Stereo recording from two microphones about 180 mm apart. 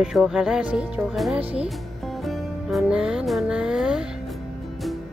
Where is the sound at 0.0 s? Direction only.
Centre (ahead or behind).